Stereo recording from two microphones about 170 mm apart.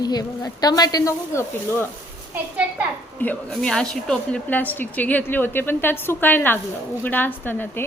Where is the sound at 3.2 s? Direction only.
5° left (ahead or behind).